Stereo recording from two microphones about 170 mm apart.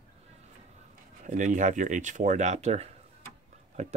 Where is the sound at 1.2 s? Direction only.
50° right (ahead or behind).